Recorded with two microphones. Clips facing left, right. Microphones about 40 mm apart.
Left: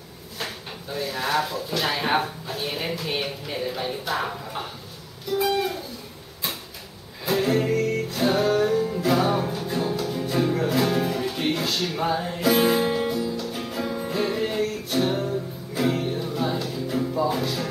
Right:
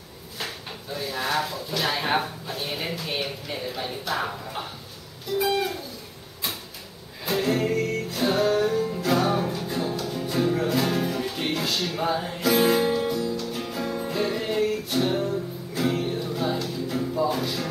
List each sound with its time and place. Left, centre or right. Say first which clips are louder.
0.9 s speech: left 2 dB; centre
5.4 s music: left 1 dB; centre
7.2 s music: left 2 dB; centre